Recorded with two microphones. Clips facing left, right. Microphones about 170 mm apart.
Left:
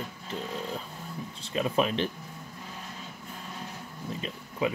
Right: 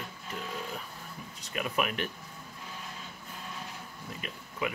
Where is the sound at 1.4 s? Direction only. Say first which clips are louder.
Left 5 dB; 30° left (ahead or behind).